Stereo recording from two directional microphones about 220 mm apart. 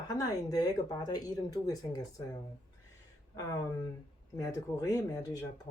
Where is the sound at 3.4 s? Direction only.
15° left (ahead or behind).